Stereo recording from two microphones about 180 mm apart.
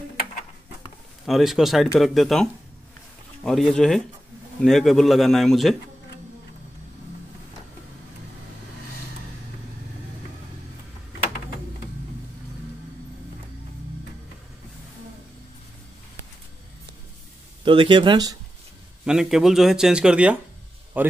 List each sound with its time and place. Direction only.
1.2 s speech: centre (ahead or behind)
17.6 s speech: 25° right (ahead or behind)
19.0 s a man's voice: 5° right (ahead or behind)